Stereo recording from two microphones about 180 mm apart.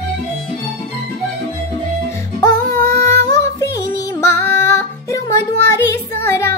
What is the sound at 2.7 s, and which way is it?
Music, 15° left (ahead or behind).